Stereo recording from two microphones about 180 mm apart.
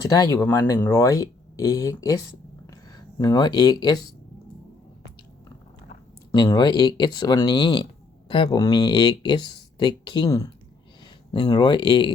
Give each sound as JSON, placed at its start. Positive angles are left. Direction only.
{"t": 0.1, "sound": "speech", "side_deg": 20}
{"t": 6.3, "sound": "speech", "side_deg": 25}